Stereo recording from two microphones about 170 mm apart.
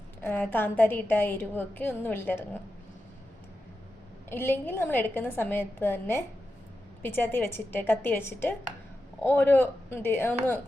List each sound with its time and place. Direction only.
0.2 s a woman's voice: 10° left (ahead or behind)
4.3 s a woman's voice: 10° left (ahead or behind)